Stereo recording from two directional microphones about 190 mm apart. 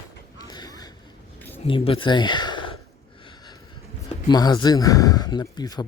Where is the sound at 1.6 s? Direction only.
30° left (ahead or behind).